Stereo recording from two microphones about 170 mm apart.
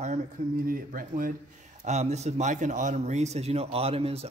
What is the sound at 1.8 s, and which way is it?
Speech, 40° right (ahead or behind).